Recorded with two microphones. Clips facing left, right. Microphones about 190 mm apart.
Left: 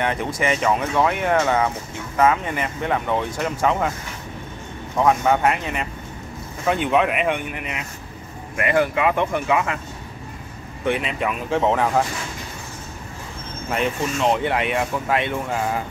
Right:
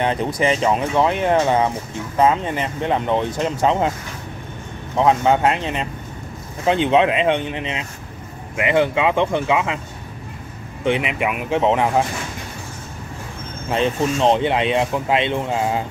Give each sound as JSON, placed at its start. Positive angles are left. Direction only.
{"t": 0.0, "sound": "speech", "side_deg": -30}
{"t": 4.9, "sound": "speech", "side_deg": -25}
{"t": 10.8, "sound": "speech", "side_deg": -20}
{"t": 13.7, "sound": "speech", "side_deg": -25}